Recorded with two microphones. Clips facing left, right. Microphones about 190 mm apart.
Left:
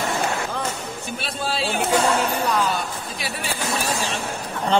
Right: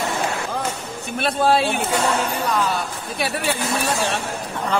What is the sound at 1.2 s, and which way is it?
Speech, 60° right (ahead or behind).